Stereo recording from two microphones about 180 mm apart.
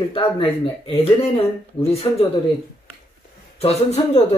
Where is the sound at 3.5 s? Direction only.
35° left (ahead or behind).